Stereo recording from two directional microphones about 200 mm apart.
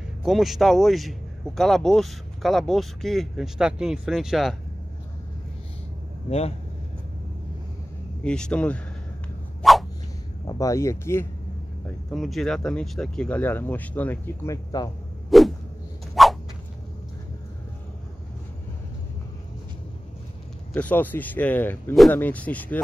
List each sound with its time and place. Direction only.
0.2 s a man's voice: centre (ahead or behind)
8.2 s a man's voice: 5° left (ahead or behind)
9.6 s a sound: centre (ahead or behind)
10.4 s speech: 15° left (ahead or behind)
12.1 s speech: centre (ahead or behind); by 14.9 s 20° left (ahead or behind)
15.2 s a sound: centre (ahead or behind)
20.7 s speech: 10° left (ahead or behind)